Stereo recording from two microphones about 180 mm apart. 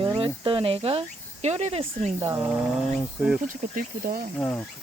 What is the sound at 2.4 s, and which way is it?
Speech, 5° right (ahead or behind).